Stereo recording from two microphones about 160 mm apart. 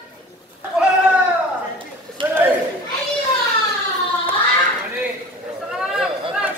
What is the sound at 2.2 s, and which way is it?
Chatter, 30° right (ahead or behind).